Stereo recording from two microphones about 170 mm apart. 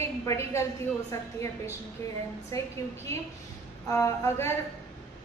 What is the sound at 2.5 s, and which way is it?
Speech, 20° left (ahead or behind).